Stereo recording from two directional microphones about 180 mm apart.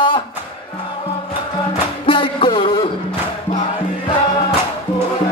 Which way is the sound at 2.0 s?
30° left (ahead or behind).